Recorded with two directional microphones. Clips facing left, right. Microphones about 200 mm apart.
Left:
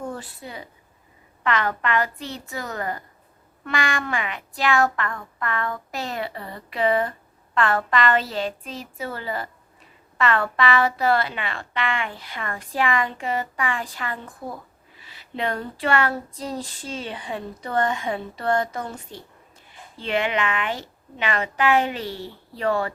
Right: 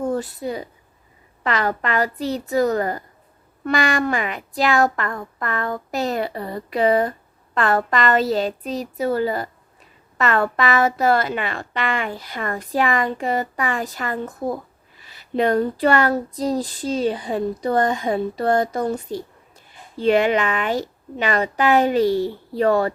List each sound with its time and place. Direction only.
0.0 s a woman's voice: 40° right (ahead or behind)